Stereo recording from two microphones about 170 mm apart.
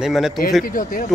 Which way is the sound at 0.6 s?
55° left (ahead or behind).